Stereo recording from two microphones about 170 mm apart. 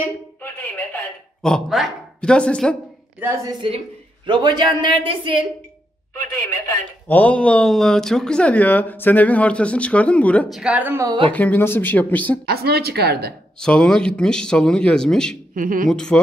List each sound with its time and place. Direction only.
0.4 s a sound: 10° left (ahead or behind)
1.4 s speech: centre (ahead or behind)
3.2 s speech: 15° right (ahead or behind)
3.5 s a woman's voice: 30° right (ahead or behind)
7.1 s speech: 10° left (ahead or behind)
10.6 s speech: 10° right (ahead or behind)
11.1 s a woman's voice: 30° right (ahead or behind)
11.3 s speech: 10° left (ahead or behind)
12.4 s speech: 70° right (ahead or behind)
13.6 s speech: 5° left (ahead or behind)
15.5 s speech: 55° right (ahead or behind)
15.9 s speech: 5° left (ahead or behind)